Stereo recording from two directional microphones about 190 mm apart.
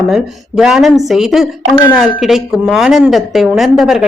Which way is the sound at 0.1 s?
5° right (ahead or behind).